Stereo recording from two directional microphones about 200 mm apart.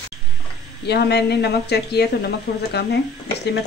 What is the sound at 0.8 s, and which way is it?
A woman's voice, 55° left (ahead or behind).